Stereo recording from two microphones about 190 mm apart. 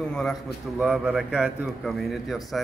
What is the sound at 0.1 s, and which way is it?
A man's voice, centre (ahead or behind).